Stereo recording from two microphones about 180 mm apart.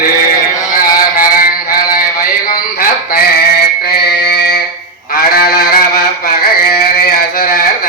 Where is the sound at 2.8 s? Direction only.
55° left (ahead or behind).